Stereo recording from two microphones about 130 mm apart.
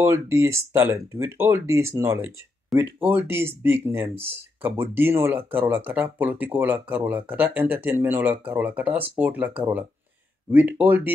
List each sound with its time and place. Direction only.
0.0 s speech: 20° right (ahead or behind)